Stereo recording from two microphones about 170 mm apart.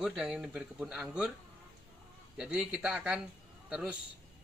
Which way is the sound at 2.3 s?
5° right (ahead or behind).